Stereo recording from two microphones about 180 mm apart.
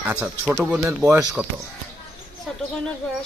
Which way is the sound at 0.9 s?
15° right (ahead or behind).